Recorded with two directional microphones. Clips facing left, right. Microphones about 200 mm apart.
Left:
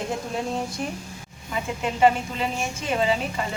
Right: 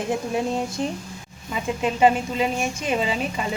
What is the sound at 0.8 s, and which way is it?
Speech, 30° right (ahead or behind).